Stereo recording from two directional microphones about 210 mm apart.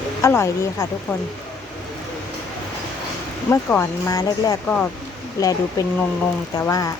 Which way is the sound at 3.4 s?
10° left (ahead or behind).